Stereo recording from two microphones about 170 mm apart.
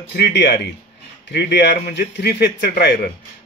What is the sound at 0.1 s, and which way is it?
Speech, 80° left.